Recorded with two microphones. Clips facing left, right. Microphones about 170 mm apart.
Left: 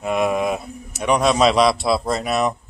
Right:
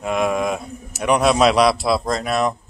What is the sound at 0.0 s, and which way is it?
A man's voice, centre (ahead or behind).